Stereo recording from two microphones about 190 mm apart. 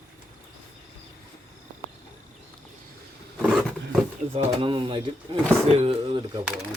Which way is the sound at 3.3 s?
Centre (ahead or behind).